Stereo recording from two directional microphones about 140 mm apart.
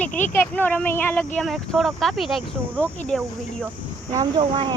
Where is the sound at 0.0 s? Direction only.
10° left (ahead or behind).